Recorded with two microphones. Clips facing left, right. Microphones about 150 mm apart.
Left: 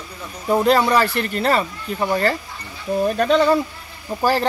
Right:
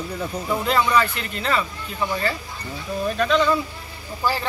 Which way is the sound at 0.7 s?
35° left (ahead or behind).